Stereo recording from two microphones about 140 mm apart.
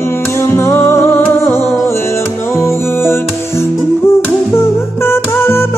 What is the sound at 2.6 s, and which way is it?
Music, 20° left (ahead or behind).